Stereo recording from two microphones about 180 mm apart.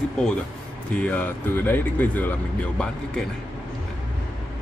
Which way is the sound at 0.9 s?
10° left (ahead or behind).